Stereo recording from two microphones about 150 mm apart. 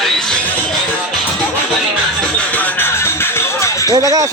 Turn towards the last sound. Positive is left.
turn(degrees=-20)  # may be behind; listen again after turning